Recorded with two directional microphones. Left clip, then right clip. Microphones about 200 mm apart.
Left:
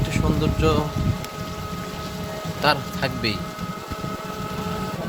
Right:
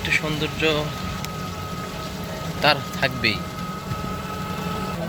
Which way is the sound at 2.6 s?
20° left (ahead or behind).